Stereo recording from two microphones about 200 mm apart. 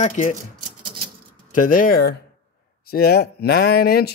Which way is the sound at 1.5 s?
45° left (ahead or behind).